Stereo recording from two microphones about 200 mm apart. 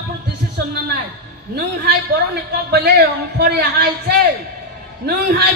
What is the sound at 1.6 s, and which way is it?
A man's voice, 50° right (ahead or behind).